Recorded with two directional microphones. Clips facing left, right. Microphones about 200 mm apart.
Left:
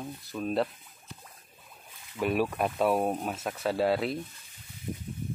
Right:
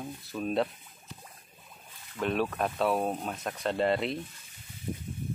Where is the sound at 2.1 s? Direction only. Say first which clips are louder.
Left 2 dB; 10° left (ahead or behind).